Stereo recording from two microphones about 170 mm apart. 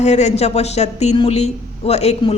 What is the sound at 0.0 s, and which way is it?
A man's voice, 40° left (ahead or behind).